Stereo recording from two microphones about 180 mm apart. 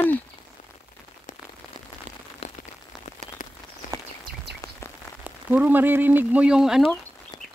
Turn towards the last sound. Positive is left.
turn(degrees=-5)  # may be behind; listen again after turning